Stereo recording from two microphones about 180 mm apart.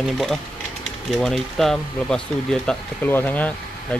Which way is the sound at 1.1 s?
Centre (ahead or behind).